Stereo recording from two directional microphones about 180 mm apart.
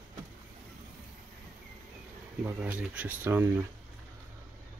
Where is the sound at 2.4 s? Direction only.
10° right (ahead or behind).